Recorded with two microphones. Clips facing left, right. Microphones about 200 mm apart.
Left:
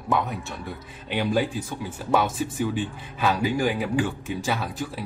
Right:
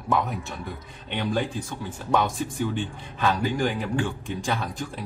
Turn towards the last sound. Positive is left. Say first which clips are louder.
# left 1 dB
turn(degrees=5)  # may be behind; listen again after turning